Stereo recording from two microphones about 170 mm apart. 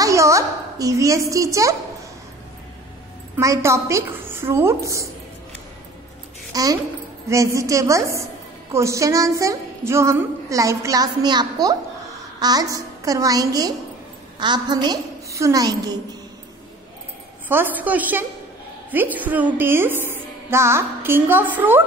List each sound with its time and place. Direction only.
0.0 s a woman's voice: 20° right (ahead or behind)
3.3 s a woman's voice: 15° right (ahead or behind)
6.5 s a woman's voice: 20° right (ahead or behind)
17.5 s a woman's voice: 10° right (ahead or behind)